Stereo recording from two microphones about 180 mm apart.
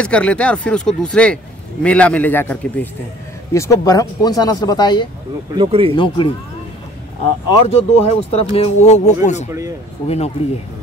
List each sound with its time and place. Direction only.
0.0 s speech: 5° left (ahead or behind); by 5.0 s 25° left (ahead or behind)
5.5 s speech: 30° right (ahead or behind)
5.9 s speech: 30° left (ahead or behind)
7.6 s speech: 35° left (ahead or behind)
9.5 s speech: 15° right (ahead or behind)
10.0 s speech: 35° left (ahead or behind)